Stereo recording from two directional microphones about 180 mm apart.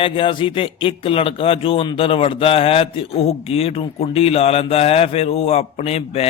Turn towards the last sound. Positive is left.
turn(degrees=35)  # may be behind; listen again after turning